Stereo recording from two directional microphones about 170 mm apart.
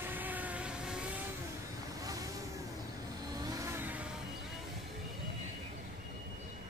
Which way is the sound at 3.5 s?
15° right (ahead or behind).